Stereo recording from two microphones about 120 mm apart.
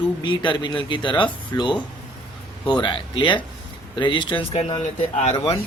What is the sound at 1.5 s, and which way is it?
Speech, 30° left (ahead or behind).